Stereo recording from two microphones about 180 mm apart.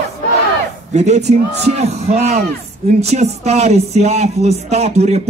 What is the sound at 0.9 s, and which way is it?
Speech, 40° right (ahead or behind).